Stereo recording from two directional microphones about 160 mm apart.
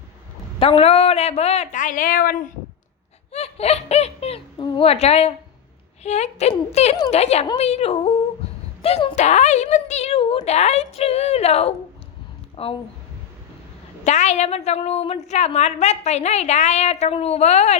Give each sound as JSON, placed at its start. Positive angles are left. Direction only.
{"t": 0.6, "sound": "a woman's voice", "side_deg": 35}
{"t": 3.3, "sound": "giggle", "side_deg": 40}
{"t": 4.5, "sound": "a woman's voice", "side_deg": 30}
{"t": 14.0, "sound": "a woman's voice", "side_deg": 45}